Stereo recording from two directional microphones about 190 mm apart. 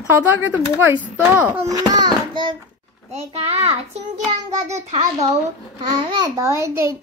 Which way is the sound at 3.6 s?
35° right (ahead or behind).